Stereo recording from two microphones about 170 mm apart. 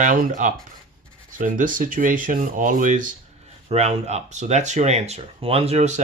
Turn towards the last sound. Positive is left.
turn(degrees=-45)  # may be behind; listen again after turning